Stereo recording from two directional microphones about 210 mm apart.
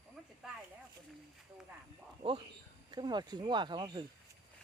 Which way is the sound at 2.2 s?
25° right (ahead or behind).